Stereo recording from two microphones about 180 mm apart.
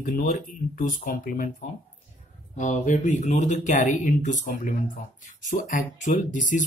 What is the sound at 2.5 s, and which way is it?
Speech, 45° left (ahead or behind).